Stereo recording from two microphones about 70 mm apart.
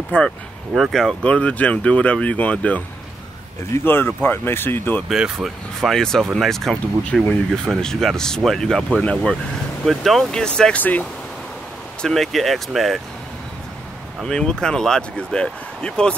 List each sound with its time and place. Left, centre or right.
0.1 s speech: left
0.7 s speech: centre
1.2 s speech: centre
3.7 s speech: left
5.0 s speech: centre
5.8 s speech: centre
9.8 s speech: centre
10.8 s speech: left
12.0 s speech: centre
14.2 s speech: centre